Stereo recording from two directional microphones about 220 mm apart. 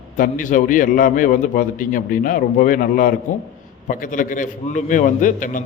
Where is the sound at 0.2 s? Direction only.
35° left (ahead or behind).